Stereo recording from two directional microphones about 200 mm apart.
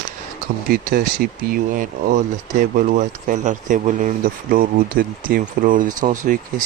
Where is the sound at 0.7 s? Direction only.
50° right (ahead or behind).